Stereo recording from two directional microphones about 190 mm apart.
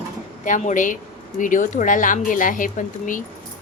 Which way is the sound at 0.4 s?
40° left (ahead or behind).